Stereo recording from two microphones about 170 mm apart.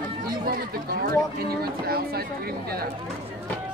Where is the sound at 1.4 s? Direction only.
65° right (ahead or behind).